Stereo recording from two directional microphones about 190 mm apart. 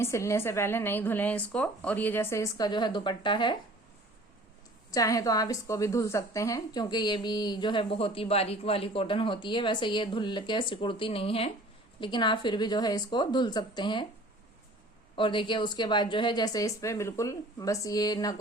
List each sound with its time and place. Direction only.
0.0 s speech: 15° left (ahead or behind)
4.9 s a woman's voice: 20° left (ahead or behind)
15.1 s a woman's voice: 25° left (ahead or behind)